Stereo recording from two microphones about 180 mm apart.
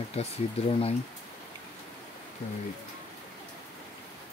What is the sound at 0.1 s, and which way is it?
Speech, 35° left (ahead or behind).